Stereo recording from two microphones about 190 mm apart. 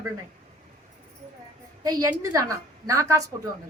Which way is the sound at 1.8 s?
20° right (ahead or behind).